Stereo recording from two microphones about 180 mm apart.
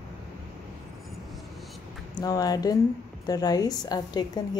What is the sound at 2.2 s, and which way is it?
Speech, 20° left (ahead or behind).